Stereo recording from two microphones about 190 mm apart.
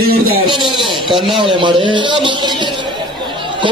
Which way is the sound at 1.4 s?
25° right (ahead or behind).